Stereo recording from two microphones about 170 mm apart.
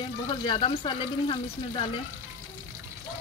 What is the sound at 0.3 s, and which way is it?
A woman's voice, 30° left (ahead or behind).